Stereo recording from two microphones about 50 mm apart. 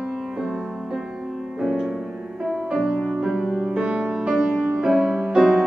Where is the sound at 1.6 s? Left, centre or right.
Centre.